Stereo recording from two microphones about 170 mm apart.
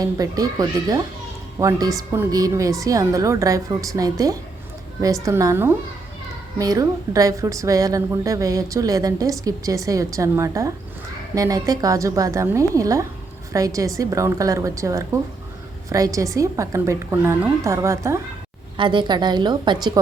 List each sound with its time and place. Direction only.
0.0 s a woman's voice: 20° right (ahead or behind)
18.8 s a woman's voice: 30° right (ahead or behind)